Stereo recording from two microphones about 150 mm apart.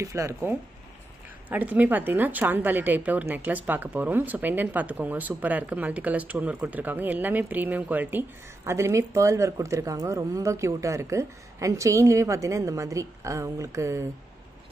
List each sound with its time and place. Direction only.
0.0 s a woman's voice: 20° right (ahead or behind)